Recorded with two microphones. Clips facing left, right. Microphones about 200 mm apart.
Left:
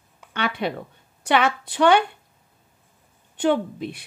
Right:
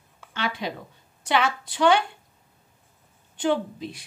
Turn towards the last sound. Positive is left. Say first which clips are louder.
# left 3 dB
turn(degrees=60)  # may be behind; listen again after turning